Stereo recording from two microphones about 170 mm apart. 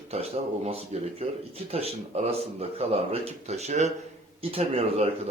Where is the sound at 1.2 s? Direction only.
35° right (ahead or behind).